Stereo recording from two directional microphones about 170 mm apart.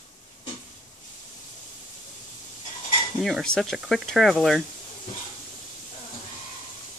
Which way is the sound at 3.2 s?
Centre (ahead or behind).